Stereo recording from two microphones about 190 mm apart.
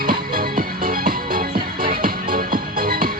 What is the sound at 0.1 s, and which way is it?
Music, 50° right (ahead or behind).